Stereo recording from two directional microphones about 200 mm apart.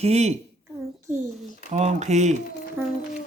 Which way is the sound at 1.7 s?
35° right (ahead or behind).